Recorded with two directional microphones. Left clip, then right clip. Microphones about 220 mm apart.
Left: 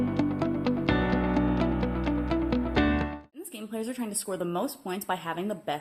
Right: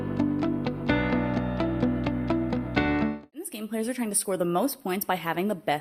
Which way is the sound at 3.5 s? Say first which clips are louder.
Right 4 dB; 35° right (ahead or behind).